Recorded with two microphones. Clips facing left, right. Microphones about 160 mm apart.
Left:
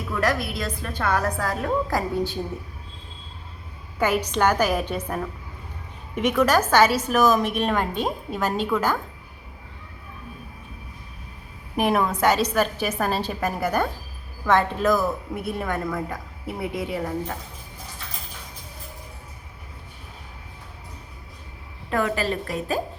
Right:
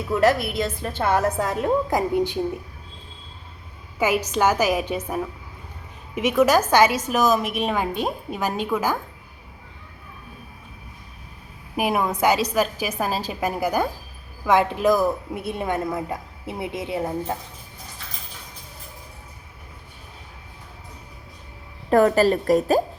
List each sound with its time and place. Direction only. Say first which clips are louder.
0.1 s a woman's voice: right 5 dB; 25° right (ahead or behind)
4.3 s a woman's voice: right 1 dB; 5° right (ahead or behind)
11.8 s a woman's voice: left 1 dB; 10° right (ahead or behind); by 17.3 s 25° right (ahead or behind)
21.8 s a woman's voice: right 8 dB; 40° right (ahead or behind)